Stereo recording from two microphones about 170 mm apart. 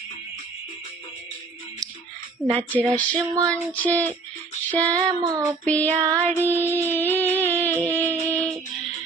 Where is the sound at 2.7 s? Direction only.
10° left (ahead or behind).